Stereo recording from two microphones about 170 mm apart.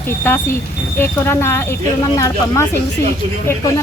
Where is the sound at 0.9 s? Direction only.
15° left (ahead or behind).